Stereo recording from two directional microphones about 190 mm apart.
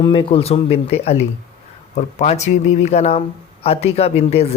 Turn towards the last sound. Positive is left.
turn(degrees=30)  # may be behind; listen again after turning